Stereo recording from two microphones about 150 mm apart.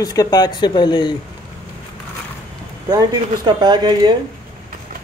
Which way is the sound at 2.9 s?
25° right (ahead or behind).